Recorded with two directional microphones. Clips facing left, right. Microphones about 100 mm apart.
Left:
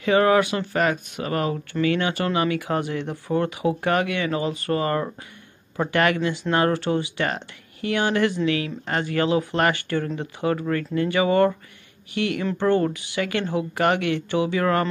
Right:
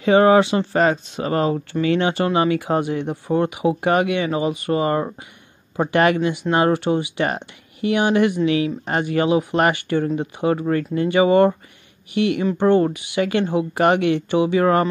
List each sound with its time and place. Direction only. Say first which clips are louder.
0.0 s speech: right 5 dB; 30° right (ahead or behind)